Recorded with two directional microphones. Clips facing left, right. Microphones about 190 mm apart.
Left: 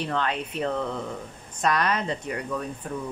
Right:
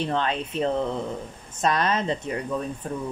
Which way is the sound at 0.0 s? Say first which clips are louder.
Right 2 dB; 25° right (ahead or behind).